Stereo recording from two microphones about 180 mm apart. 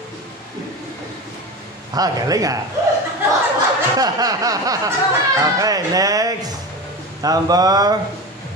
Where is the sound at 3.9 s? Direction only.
20° right (ahead or behind).